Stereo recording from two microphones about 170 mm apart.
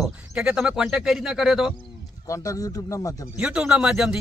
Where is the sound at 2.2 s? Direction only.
20° left (ahead or behind).